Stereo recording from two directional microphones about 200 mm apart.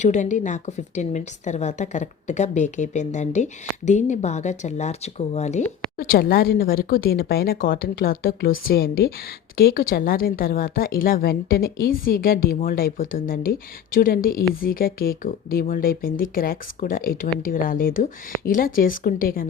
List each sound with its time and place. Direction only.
0.0 s a woman's voice: 35° left (ahead or behind)
6.0 s a woman's voice: 50° left (ahead or behind)